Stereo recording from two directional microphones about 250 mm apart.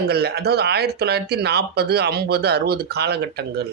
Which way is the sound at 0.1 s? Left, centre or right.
Right.